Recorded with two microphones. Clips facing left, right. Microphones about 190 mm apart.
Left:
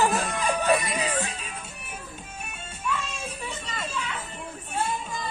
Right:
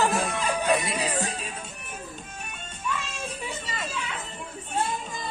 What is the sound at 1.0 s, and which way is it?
Music, 40° right (ahead or behind).